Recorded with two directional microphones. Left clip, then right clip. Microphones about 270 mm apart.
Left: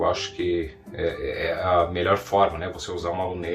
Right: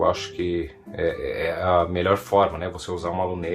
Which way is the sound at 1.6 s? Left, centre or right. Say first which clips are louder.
Right 1 dB; right.